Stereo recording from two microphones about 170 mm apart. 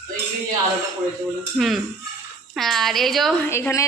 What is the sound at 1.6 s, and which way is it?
A man's voice, centre (ahead or behind).